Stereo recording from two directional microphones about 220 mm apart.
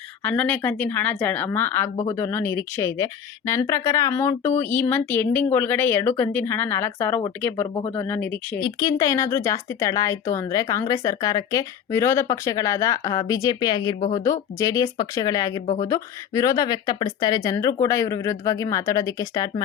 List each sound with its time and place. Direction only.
0.2 s speech: 5° left (ahead or behind)
8.6 s speech: 20° left (ahead or behind)